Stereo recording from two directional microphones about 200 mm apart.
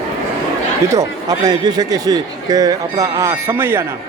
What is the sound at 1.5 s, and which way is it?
Speech, 20° right (ahead or behind).